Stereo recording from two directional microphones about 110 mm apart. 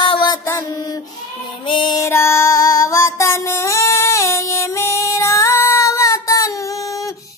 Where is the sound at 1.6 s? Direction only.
50° left (ahead or behind).